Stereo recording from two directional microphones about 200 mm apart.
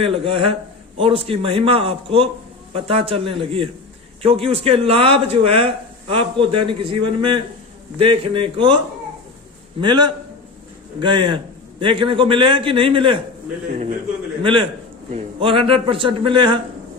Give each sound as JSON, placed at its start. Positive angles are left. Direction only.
{"t": 0.0, "sound": "speech", "side_deg": -25}
{"t": 9.8, "sound": "speech", "side_deg": -20}
{"t": 14.4, "sound": "speech", "side_deg": -25}